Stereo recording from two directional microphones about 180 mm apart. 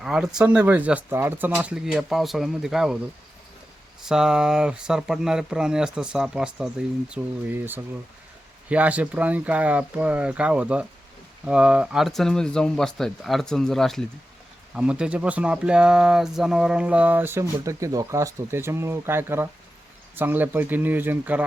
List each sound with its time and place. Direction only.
0.0 s speech: 5° right (ahead or behind)
4.0 s speech: 5° right (ahead or behind)